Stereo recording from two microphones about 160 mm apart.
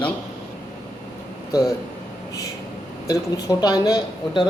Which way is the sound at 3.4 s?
25° left (ahead or behind).